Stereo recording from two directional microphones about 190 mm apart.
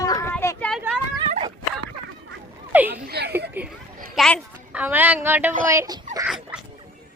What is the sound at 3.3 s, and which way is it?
Speech, 10° right (ahead or behind).